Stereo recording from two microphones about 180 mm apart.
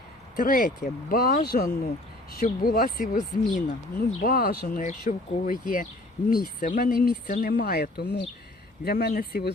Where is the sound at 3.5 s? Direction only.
45° left (ahead or behind); by 8.3 s 70° left (ahead or behind).